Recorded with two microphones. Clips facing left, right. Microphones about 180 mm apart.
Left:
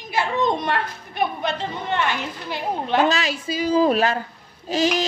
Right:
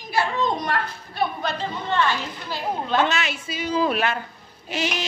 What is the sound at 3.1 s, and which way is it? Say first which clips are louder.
A woman's voice: left 4 dB; 35° left (ahead or behind).